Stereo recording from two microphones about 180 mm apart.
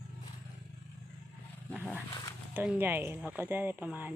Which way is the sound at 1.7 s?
10° left (ahead or behind).